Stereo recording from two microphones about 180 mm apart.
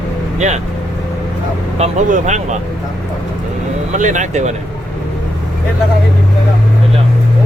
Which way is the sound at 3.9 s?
45° right (ahead or behind).